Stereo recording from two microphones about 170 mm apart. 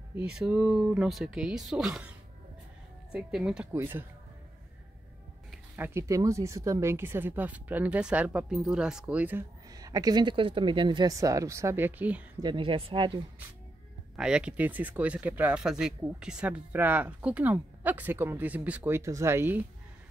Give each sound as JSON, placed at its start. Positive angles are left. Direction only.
{"t": 0.3, "sound": "speech", "side_deg": -5}
{"t": 5.8, "sound": "speech", "side_deg": -15}
{"t": 9.7, "sound": "speech", "side_deg": -20}
{"t": 12.4, "sound": "speech", "side_deg": -30}
{"t": 14.1, "sound": "speech", "side_deg": -5}